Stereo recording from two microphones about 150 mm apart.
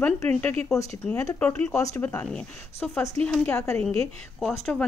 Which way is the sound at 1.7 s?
20° left (ahead or behind).